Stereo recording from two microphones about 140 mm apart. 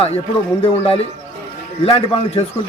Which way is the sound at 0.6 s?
45° left (ahead or behind).